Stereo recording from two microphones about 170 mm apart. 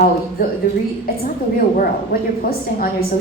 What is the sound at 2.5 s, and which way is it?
Speech, 60° left (ahead or behind).